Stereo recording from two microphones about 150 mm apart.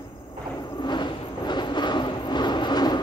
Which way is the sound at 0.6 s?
30° left (ahead or behind).